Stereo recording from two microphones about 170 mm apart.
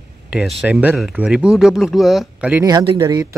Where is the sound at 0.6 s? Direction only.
10° right (ahead or behind).